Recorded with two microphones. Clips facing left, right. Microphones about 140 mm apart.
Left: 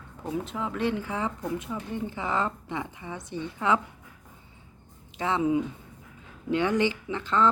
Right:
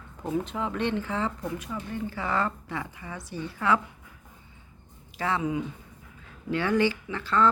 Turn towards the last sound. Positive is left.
turn(degrees=20)  # may be behind; listen again after turning